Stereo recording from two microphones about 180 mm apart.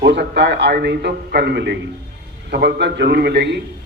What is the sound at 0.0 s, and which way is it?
A man's voice, 75° right (ahead or behind).